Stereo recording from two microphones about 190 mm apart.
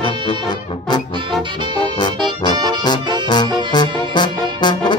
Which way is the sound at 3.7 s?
25° left (ahead or behind).